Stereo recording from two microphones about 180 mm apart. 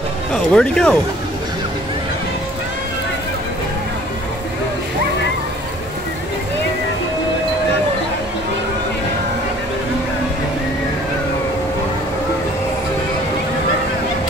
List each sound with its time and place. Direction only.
0.3 s speech: 5° left (ahead or behind)